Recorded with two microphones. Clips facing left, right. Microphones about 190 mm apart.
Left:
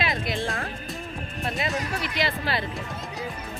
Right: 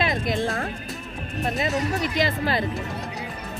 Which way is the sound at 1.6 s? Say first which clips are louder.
Right 4 dB; 45° right (ahead or behind).